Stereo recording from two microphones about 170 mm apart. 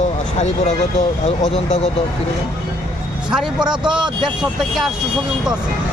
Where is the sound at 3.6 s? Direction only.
25° right (ahead or behind).